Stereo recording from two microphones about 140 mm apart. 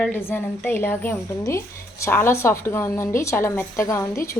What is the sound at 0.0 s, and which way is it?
A woman's voice, 15° left (ahead or behind).